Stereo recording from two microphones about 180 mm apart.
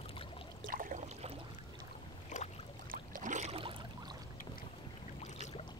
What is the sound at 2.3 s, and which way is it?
Boat, 40° left (ahead or behind).